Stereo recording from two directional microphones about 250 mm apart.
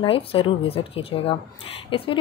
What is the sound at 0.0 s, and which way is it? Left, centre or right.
A woman's voice, left.